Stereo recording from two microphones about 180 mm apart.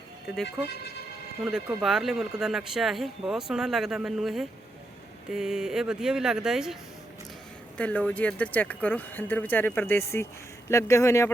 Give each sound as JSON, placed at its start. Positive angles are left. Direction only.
{"t": 1.5, "sound": "speech", "side_deg": 0}
{"t": 7.8, "sound": "speech", "side_deg": 5}